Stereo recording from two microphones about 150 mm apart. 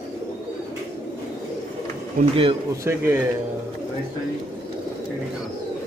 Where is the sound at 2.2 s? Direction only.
60° right (ahead or behind).